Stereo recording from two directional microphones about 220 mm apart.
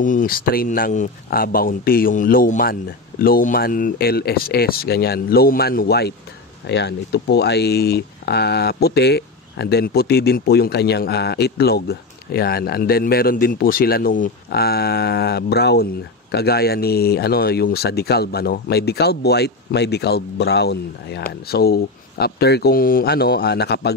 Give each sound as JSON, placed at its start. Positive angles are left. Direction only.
{"t": 0.0, "sound": "speech", "side_deg": 35}